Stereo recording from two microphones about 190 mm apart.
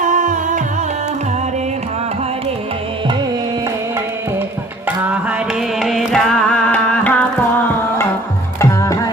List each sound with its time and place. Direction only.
0.0 s music: 40° right (ahead or behind)
4.9 s music: 10° right (ahead or behind)
5.5 s carnatic music: centre (ahead or behind)
8.5 s music: 15° left (ahead or behind)